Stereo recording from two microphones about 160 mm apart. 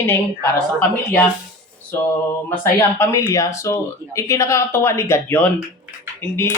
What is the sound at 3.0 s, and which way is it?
A woman's voice, 15° left (ahead or behind).